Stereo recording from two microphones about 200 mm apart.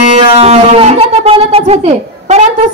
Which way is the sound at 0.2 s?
30° right (ahead or behind).